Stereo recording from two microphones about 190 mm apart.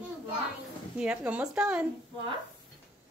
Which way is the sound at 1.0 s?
5° right (ahead or behind).